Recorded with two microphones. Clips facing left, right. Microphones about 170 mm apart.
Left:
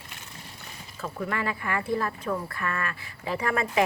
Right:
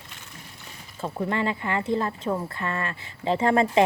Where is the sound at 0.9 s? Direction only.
25° right (ahead or behind).